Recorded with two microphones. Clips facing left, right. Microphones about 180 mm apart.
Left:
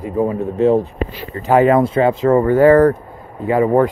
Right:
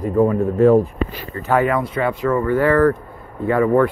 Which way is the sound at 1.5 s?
25° left (ahead or behind).